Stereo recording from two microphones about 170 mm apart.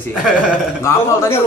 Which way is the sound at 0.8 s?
15° left (ahead or behind).